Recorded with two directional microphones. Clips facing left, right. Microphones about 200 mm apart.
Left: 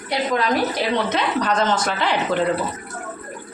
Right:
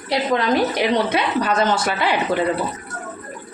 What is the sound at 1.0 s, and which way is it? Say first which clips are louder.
Speech: right 1 dB; 10° right (ahead or behind).